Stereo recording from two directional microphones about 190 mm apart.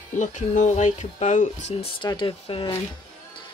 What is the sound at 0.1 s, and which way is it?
Speech, 40° left (ahead or behind).